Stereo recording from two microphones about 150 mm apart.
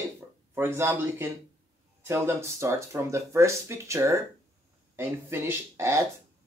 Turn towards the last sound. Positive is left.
turn(degrees=-20)  # may be behind; listen again after turning